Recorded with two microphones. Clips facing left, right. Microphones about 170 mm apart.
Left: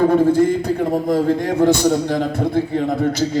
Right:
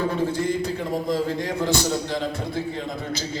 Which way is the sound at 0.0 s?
55° left (ahead or behind).